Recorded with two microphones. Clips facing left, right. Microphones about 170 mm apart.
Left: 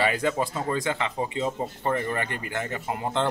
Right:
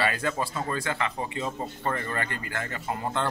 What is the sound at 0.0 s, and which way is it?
Speech, 20° left (ahead or behind).